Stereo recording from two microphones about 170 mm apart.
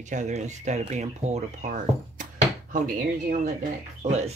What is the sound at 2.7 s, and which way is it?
Speech, 50° right (ahead or behind).